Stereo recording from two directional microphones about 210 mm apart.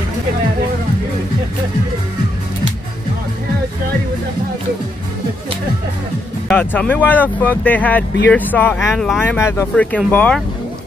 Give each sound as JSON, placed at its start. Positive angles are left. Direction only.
{"t": 6.5, "sound": "speech", "side_deg": 10}